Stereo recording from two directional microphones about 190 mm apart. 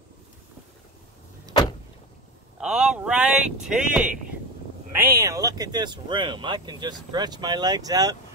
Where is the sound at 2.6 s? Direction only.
5° right (ahead or behind).